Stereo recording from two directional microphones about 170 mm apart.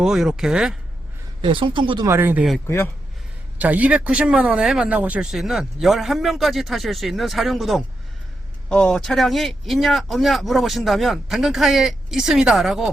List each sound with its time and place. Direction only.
0.0 s speech: 5° right (ahead or behind)
1.4 s speech: 30° right (ahead or behind)
2.0 s speech: 10° right (ahead or behind)
2.6 s speech: 15° left (ahead or behind)
3.6 s speech: 10° right (ahead or behind)